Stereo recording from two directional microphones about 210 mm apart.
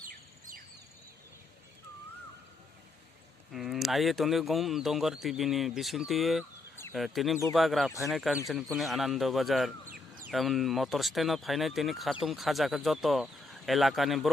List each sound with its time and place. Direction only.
3.5 s speech: centre (ahead or behind)
9.8 s a sound: 40° right (ahead or behind)
10.3 s speech: centre (ahead or behind)